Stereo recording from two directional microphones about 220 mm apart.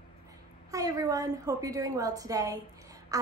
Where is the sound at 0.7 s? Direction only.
15° right (ahead or behind).